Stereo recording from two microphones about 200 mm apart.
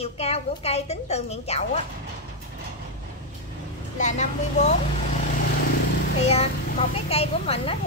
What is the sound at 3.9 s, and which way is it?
Speech, 35° left (ahead or behind).